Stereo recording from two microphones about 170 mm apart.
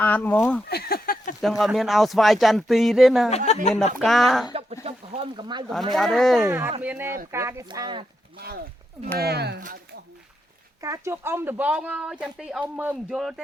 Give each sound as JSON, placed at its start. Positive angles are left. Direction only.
{"t": 0.0, "sound": "speech", "side_deg": 10}
{"t": 0.7, "sound": "a sound", "side_deg": 65}
{"t": 1.4, "sound": "speech", "side_deg": 0}
{"t": 3.2, "sound": "speech", "side_deg": 40}
{"t": 3.9, "sound": "speech", "side_deg": 0}
{"t": 4.5, "sound": "a sound", "side_deg": -35}
{"t": 5.9, "sound": "speech", "side_deg": 0}
{"t": 6.5, "sound": "speech", "side_deg": -15}
{"t": 9.1, "sound": "speech", "side_deg": -70}
{"t": 10.8, "sound": "speech", "side_deg": -20}